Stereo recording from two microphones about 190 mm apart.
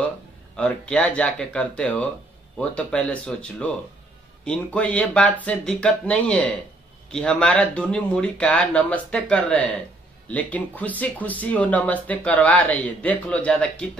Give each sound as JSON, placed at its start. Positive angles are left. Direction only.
{"t": 0.6, "sound": "speech", "side_deg": 5}